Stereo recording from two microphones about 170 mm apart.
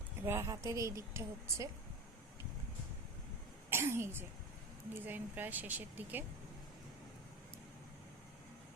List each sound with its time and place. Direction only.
0.3 s speech: 15° right (ahead or behind)
3.7 s speech: 15° right (ahead or behind)